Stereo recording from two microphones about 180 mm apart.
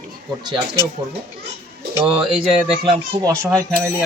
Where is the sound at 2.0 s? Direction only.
30° right (ahead or behind).